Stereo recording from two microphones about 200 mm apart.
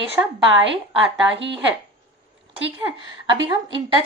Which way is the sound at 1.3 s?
65° right (ahead or behind).